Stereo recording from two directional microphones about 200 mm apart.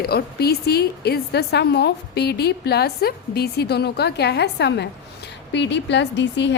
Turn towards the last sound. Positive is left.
turn(degrees=65)  # may be behind; listen again after turning